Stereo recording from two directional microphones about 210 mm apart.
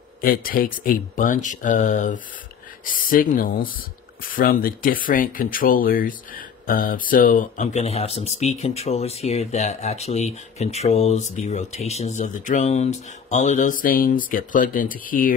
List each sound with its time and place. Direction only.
0.2 s speech: 45° left (ahead or behind)